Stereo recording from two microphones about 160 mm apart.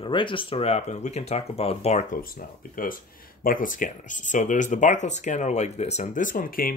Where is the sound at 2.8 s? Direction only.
60° left (ahead or behind).